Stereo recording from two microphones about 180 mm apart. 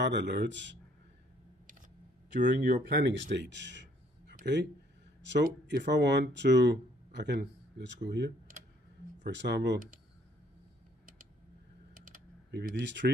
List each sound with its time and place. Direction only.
0.0 s speech: 75° right (ahead or behind)
2.4 s speech: 65° right (ahead or behind)
5.2 s speech: 75° right (ahead or behind)
11.9 s typing: 50° right (ahead or behind)
12.4 s speech: 60° right (ahead or behind)